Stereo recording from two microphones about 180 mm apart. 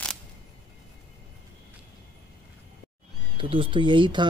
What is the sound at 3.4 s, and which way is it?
Speech, 30° right (ahead or behind).